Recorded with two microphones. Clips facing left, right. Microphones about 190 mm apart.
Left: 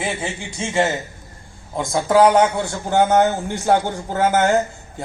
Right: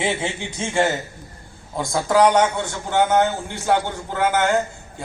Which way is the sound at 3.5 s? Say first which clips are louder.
Left 3 dB; 40° left (ahead or behind).